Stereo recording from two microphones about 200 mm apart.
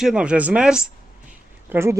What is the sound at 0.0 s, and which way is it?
A man's voice, 5° right (ahead or behind).